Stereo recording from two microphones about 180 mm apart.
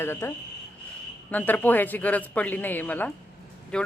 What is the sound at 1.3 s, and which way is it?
Speech, 10° left (ahead or behind).